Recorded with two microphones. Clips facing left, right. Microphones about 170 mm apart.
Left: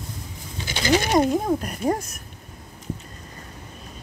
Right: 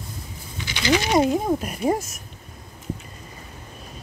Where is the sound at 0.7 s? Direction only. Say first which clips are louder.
Left 1 dB; 40° left (ahead or behind).